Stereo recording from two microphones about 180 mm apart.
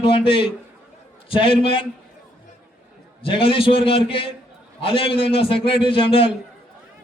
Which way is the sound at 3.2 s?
30° left (ahead or behind).